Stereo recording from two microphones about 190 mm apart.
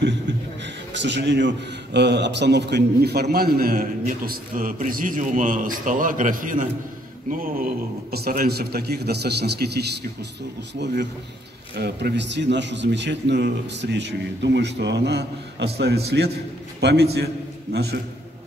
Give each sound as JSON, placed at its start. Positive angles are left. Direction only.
{"t": 0.9, "sound": "a man's voice", "side_deg": -70}